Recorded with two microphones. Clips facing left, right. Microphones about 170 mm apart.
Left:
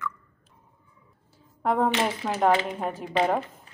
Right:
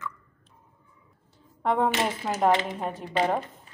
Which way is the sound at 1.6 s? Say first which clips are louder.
Left 1 dB; centre (ahead or behind).